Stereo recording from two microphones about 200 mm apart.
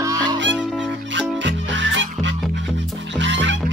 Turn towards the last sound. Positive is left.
turn(degrees=-65)  # may be behind; listen again after turning